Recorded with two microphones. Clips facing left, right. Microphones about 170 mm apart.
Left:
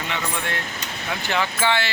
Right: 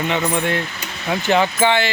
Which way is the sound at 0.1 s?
20° right (ahead or behind).